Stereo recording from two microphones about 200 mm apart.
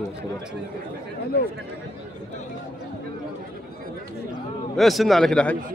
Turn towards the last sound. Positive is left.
turn(degrees=5)  # may be behind; listen again after turning